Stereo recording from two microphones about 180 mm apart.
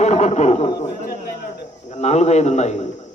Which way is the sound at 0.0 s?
40° left (ahead or behind).